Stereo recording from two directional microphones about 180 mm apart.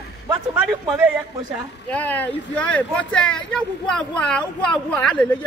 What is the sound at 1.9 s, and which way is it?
Speech, 10° left (ahead or behind).